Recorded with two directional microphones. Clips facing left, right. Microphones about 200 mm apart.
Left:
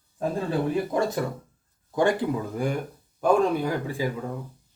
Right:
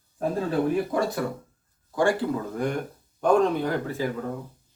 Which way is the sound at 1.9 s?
20° left (ahead or behind).